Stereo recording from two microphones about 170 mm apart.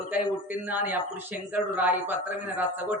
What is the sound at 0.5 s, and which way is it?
Speech, 10° right (ahead or behind).